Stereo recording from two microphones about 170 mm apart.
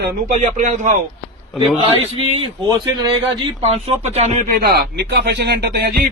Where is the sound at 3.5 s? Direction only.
40° right (ahead or behind).